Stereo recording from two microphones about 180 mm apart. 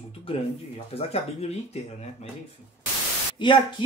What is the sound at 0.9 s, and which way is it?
Speech, 35° left (ahead or behind).